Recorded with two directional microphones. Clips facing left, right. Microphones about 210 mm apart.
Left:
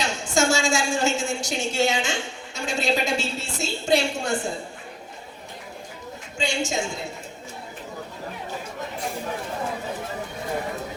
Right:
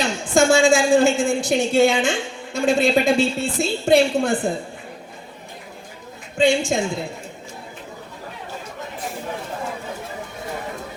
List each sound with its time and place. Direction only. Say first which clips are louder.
0.3 s a woman's voice: right 7 dB; 55° right (ahead or behind)
6.3 s a woman's voice: right 9 dB; 55° right (ahead or behind)